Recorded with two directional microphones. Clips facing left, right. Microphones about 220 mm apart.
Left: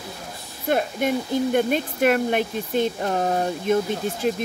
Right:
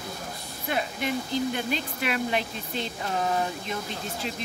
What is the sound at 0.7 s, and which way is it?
Speech, 50° left (ahead or behind).